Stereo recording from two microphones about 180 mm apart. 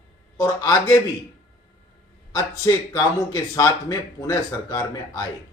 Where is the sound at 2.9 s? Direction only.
20° left (ahead or behind).